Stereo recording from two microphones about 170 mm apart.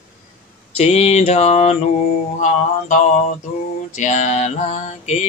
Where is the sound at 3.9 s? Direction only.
45° left (ahead or behind).